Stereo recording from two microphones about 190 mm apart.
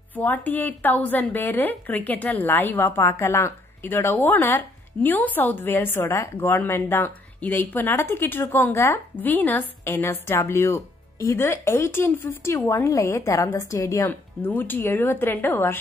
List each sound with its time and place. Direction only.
0.1 s a woman's voice: 10° left (ahead or behind)